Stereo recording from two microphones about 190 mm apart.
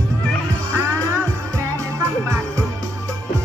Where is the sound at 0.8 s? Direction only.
15° right (ahead or behind).